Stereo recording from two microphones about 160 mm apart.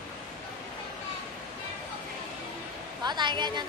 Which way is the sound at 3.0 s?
25° right (ahead or behind).